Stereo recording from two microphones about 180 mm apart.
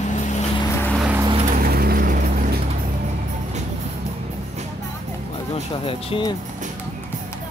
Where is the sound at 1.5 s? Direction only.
55° right (ahead or behind).